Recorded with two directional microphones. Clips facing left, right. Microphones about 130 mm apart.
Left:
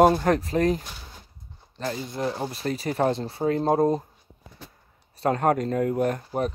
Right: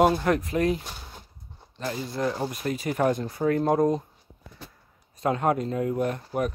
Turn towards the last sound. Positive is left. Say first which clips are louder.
# left 2 dB
turn(degrees=45)  # may be behind; listen again after turning